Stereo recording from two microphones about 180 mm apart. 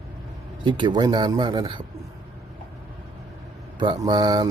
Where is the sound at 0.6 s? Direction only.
25° right (ahead or behind).